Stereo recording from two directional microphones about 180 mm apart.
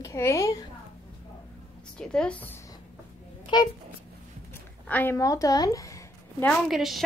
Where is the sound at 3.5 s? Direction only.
25° left (ahead or behind).